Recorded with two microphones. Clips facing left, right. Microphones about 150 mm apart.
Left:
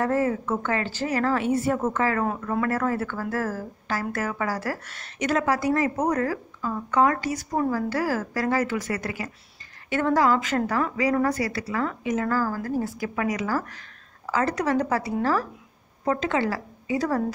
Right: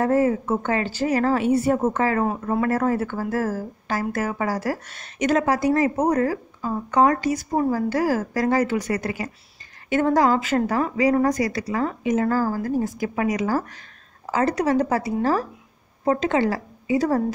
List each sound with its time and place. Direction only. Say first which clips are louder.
0.0 s a woman's voice: right 4 dB; 20° right (ahead or behind)
1.8 s a woman's voice: right 3 dB; 30° right (ahead or behind)
3.0 s a woman's voice: right 3 dB; 15° right (ahead or behind); by 6.2 s 30° right (ahead or behind)
6.2 s speech: right 3 dB; 20° right (ahead or behind)
6.7 s speech: right 3 dB; 35° right (ahead or behind)
7.2 s speech: right 4 dB; 15° right (ahead or behind)
8.3 s speech: right 4 dB; 35° right (ahead or behind)
9.8 s a woman's voice: right 3 dB; 15° right (ahead or behind)